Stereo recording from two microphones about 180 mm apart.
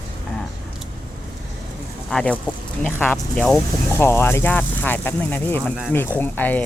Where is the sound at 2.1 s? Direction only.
5° left (ahead or behind).